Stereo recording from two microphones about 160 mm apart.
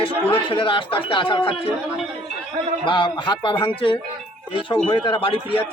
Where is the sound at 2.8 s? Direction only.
30° left (ahead or behind).